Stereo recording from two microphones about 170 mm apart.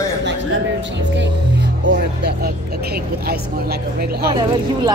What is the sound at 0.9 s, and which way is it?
Speech, 90° right.